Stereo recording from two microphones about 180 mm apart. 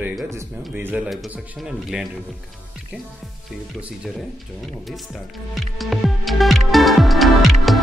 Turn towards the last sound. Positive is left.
turn(degrees=0)  # may be behind; listen again after turning